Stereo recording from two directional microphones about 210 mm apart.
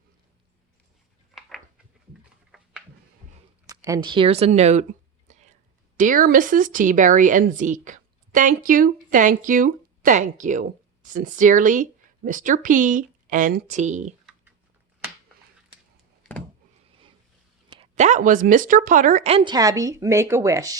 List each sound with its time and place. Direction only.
1.4 s a sound: centre (ahead or behind)
3.7 s speech: 15° right (ahead or behind); by 4.9 s 30° right (ahead or behind)
5.3 s whispering: 35° right (ahead or behind)
6.0 s speech: 40° right (ahead or behind)
17.7 s speech: 30° right (ahead or behind)
19.5 s speech: 15° right (ahead or behind)